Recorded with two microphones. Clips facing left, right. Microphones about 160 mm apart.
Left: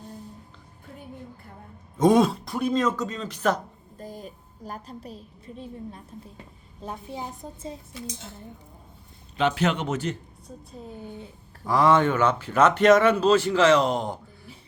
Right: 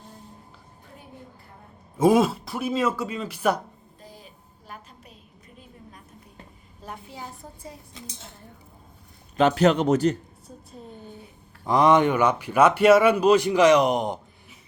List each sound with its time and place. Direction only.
2.0 s speech: 5° right (ahead or behind)
3.9 s a sound: 45° left (ahead or behind)
6.8 s a woman's voice: 25° left (ahead or behind)
9.4 s speech: 40° right (ahead or behind)
11.6 s speech: 20° right (ahead or behind)